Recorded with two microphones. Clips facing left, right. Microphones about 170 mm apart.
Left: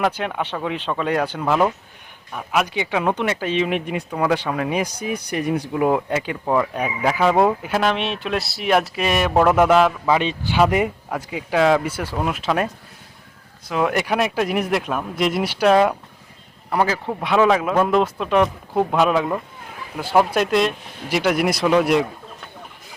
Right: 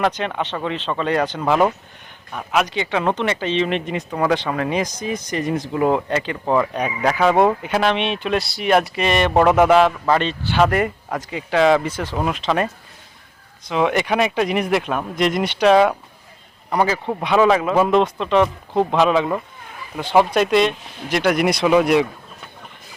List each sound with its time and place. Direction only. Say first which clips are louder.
0.0 s speech: right 1 dB; 5° left (ahead or behind)